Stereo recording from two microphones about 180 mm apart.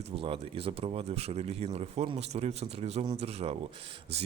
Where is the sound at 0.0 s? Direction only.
30° right (ahead or behind).